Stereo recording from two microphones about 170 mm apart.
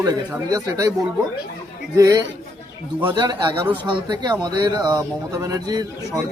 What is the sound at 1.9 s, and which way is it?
Speech, 20° right (ahead or behind).